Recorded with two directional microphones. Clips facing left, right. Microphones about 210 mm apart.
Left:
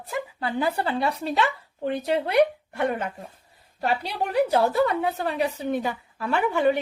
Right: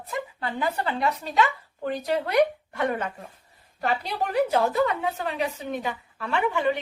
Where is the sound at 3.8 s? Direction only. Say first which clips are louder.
Left 1 dB; 30° left (ahead or behind).